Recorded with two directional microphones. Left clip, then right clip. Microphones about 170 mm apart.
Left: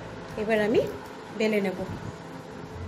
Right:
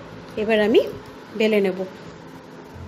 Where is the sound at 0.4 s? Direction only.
55° right (ahead or behind).